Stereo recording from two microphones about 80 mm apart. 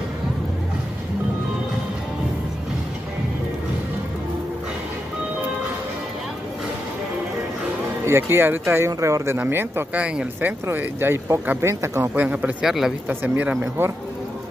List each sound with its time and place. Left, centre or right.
8.0 s speech: right
9.9 s speech: centre
10.7 s speech: right
12.2 s speech: centre
12.6 s speech: centre
13.1 s speech: right